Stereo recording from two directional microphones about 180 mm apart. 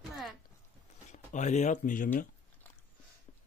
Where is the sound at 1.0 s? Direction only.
40° left (ahead or behind).